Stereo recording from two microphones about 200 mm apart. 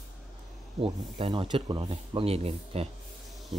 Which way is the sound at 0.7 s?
25° right (ahead or behind).